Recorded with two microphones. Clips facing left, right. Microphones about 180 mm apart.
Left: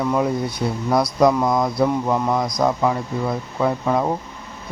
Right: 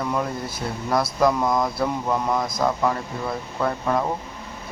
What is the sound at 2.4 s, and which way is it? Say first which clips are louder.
Speech: left 3 dB; 5° right (ahead or behind).